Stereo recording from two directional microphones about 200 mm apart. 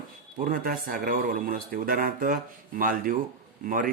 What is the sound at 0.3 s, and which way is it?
Speech, 45° right (ahead or behind).